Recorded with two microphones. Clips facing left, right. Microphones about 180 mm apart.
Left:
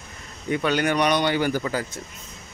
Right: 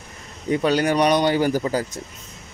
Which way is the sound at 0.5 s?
35° right (ahead or behind).